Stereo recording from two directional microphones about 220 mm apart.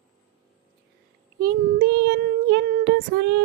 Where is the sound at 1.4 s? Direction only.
50° right (ahead or behind).